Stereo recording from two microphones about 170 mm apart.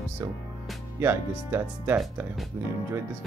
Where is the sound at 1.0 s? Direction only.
15° right (ahead or behind).